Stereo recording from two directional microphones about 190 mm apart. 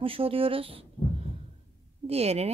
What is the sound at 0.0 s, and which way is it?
Speech, 30° right (ahead or behind).